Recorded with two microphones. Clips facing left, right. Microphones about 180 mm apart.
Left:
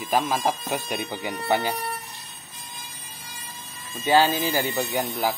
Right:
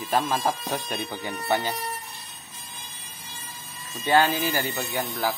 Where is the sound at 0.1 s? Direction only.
10° left (ahead or behind).